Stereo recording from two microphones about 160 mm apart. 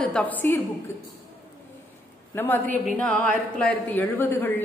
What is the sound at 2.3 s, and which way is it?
A woman's voice, 10° left (ahead or behind).